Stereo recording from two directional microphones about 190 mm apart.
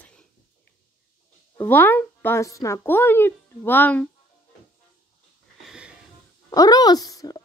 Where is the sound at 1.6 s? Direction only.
10° left (ahead or behind).